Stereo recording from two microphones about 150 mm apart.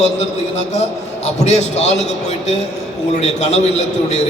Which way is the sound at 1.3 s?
50° left (ahead or behind).